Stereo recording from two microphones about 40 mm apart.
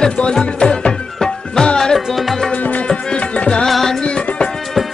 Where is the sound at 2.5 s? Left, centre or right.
Left.